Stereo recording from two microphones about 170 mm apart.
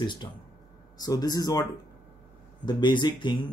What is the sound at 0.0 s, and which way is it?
Speech, 25° left (ahead or behind).